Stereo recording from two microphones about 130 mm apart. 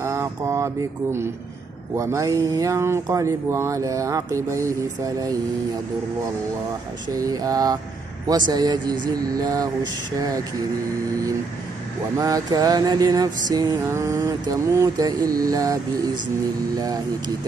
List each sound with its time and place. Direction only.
0.0 s speech: 20° right (ahead or behind)
2.0 s speech: 25° right (ahead or behind)
7.2 s speech: 30° right (ahead or behind)
8.3 s a sound: 30° right (ahead or behind)
9.0 s speech: 30° right (ahead or behind)
12.2 s a sound: 25° right (ahead or behind)
13.5 s speech: 25° right (ahead or behind)